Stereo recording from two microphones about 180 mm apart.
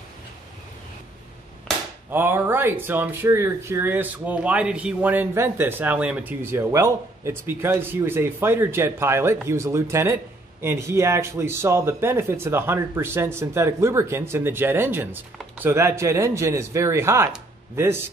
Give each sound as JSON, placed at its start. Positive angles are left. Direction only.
{"t": 2.0, "sound": "speech", "side_deg": -10}